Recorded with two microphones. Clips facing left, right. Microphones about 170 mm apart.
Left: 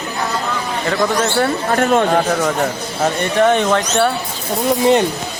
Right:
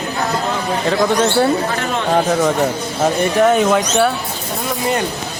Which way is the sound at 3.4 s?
5° right (ahead or behind).